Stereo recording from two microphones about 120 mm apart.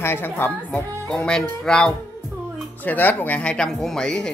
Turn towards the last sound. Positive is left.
turn(degrees=5)  # may be behind; listen again after turning